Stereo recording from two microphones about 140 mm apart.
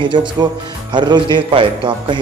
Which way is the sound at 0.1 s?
35° right (ahead or behind).